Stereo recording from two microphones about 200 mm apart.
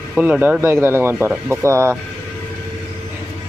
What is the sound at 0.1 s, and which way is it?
Speech, 5° right (ahead or behind).